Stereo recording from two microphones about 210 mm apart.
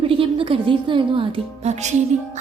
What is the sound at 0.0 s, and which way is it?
A woman's voice, 25° right (ahead or behind).